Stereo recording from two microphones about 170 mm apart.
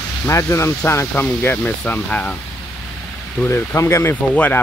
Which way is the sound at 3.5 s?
15° left (ahead or behind).